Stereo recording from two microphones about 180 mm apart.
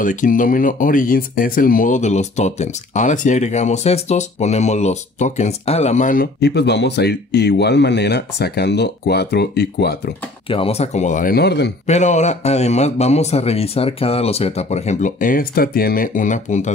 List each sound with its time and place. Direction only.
0.0 s speech: 45° left (ahead or behind)
6.4 s speech: 70° left (ahead or behind)
10.5 s speech: 35° left (ahead or behind); by 11.7 s 65° left (ahead or behind)
11.8 s a man's voice: 40° left (ahead or behind)